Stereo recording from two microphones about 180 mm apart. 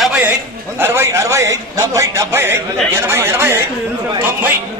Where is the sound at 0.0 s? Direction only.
Centre (ahead or behind).